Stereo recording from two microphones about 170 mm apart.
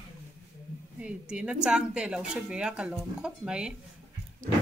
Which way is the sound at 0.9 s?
5° right (ahead or behind).